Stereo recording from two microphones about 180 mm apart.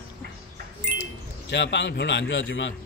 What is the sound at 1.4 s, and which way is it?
Speech, 75° left (ahead or behind).